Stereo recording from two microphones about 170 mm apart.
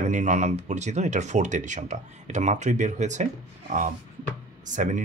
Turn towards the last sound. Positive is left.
turn(degrees=-50)  # may be behind; listen again after turning